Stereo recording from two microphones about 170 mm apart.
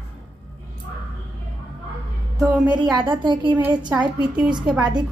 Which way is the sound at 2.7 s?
25° right (ahead or behind).